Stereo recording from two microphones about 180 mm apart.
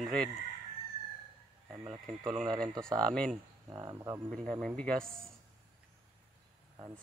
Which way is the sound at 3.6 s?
20° right (ahead or behind).